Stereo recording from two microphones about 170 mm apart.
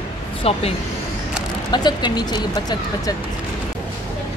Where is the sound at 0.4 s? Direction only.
35° left (ahead or behind).